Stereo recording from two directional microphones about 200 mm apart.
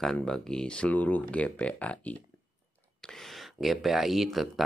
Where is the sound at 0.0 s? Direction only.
5° left (ahead or behind).